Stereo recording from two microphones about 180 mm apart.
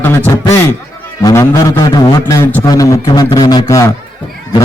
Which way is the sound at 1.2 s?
15° left (ahead or behind).